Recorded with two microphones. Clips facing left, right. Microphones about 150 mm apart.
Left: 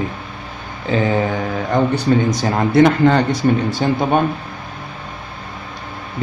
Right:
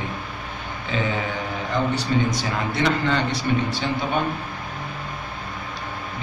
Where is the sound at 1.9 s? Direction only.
45° left (ahead or behind).